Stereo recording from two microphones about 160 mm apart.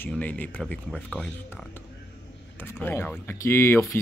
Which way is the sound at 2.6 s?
15° left (ahead or behind).